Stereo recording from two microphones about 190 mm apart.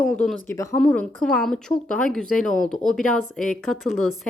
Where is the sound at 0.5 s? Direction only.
15° left (ahead or behind).